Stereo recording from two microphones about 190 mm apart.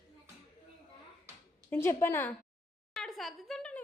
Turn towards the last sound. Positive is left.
turn(degrees=5)  # may be behind; listen again after turning